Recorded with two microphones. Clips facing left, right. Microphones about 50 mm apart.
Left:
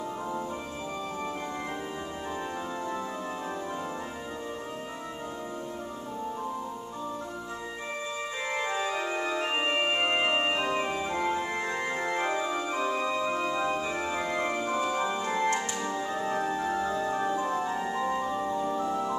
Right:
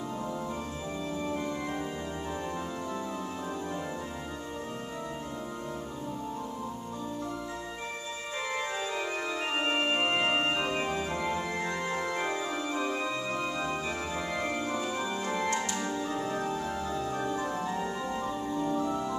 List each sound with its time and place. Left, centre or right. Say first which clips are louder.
8.7 s organ: left 3 dB; centre
16.9 s organ: left 3 dB; centre
18.3 s music: left 3 dB; left
18.6 s organ: left 1 dB; centre